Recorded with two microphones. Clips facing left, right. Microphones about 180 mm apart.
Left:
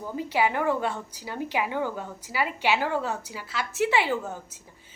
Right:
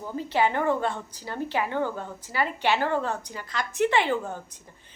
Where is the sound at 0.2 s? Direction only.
10° left (ahead or behind).